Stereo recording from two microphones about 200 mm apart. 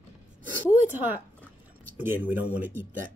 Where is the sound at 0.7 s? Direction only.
10° right (ahead or behind).